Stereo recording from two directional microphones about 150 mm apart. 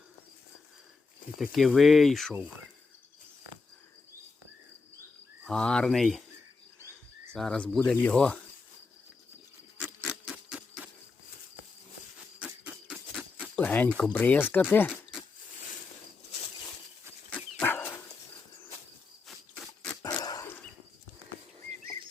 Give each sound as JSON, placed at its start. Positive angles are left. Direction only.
{"t": 1.4, "sound": "speech", "side_deg": 0}
{"t": 5.5, "sound": "speech", "side_deg": 5}
{"t": 7.3, "sound": "speech", "side_deg": 5}
{"t": 10.1, "sound": "a sound", "side_deg": -5}
{"t": 12.4, "sound": "a sound", "side_deg": -10}
{"t": 13.6, "sound": "speech", "side_deg": 10}
{"t": 17.6, "sound": "dog", "side_deg": 15}
{"t": 20.0, "sound": "dog", "side_deg": 25}